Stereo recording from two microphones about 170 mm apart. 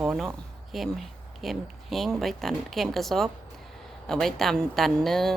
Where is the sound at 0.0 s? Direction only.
5° right (ahead or behind).